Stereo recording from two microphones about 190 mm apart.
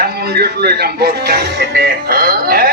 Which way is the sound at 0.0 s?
55° right (ahead or behind).